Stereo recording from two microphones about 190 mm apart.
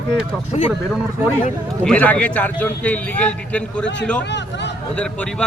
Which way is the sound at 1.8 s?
5° left (ahead or behind).